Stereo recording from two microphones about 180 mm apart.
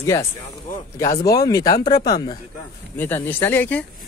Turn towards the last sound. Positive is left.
turn(degrees=10)  # may be behind; listen again after turning